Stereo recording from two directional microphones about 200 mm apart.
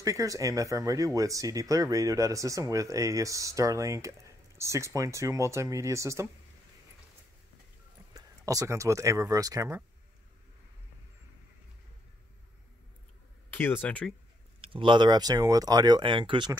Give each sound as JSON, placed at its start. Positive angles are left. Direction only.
{"t": 0.0, "sound": "speech", "side_deg": -15}
{"t": 8.1, "sound": "speech", "side_deg": -15}
{"t": 13.5, "sound": "speech", "side_deg": 10}
{"t": 14.6, "sound": "speech", "side_deg": -25}